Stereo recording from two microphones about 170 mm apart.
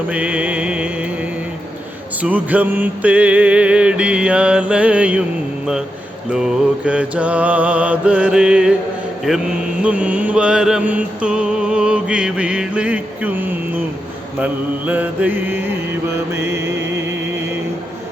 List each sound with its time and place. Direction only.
0.1 s music: 10° right (ahead or behind)
2.2 s music: 10° right (ahead or behind)
6.3 s music: 5° right (ahead or behind)
9.2 s mantra: 5° right (ahead or behind)
14.3 s music: 10° right (ahead or behind)